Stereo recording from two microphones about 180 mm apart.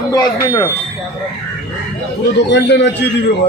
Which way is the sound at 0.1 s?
20° left (ahead or behind).